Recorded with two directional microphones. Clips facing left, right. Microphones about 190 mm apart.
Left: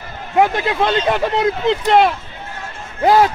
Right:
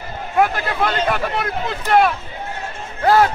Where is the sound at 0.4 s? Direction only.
20° left (ahead or behind).